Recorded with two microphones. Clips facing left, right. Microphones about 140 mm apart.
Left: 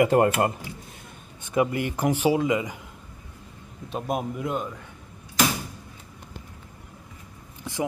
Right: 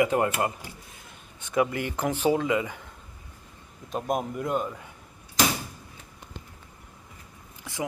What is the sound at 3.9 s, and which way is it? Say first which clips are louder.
Speech: even; centre (ahead or behind).